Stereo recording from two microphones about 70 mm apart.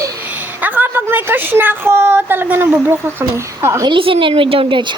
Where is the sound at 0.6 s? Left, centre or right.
Right.